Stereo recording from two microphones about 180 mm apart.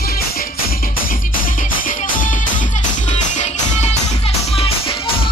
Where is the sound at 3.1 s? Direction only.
40° left (ahead or behind).